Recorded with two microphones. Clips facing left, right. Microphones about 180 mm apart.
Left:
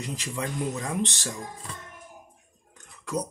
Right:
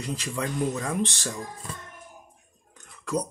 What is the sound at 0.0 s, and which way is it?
Speech, 15° left (ahead or behind).